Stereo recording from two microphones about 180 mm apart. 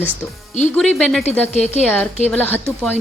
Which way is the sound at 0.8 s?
Centre (ahead or behind).